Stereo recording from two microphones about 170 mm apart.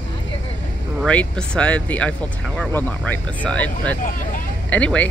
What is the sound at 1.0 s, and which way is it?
Speech, 5° left (ahead or behind).